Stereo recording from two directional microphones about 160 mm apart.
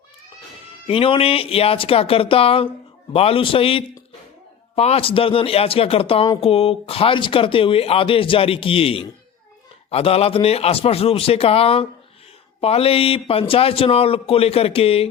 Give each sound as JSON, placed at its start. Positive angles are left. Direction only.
{"t": 0.9, "sound": "speech", "side_deg": 35}